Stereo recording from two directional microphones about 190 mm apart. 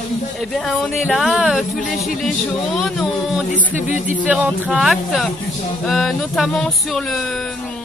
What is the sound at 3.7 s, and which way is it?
Speech, 40° left (ahead or behind).